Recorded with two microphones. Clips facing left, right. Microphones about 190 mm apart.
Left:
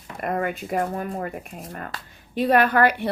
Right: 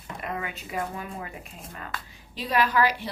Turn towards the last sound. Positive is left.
turn(degrees=60)  # may be behind; listen again after turning